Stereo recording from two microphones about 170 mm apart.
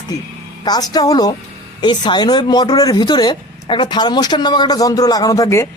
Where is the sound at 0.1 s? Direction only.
20° left (ahead or behind).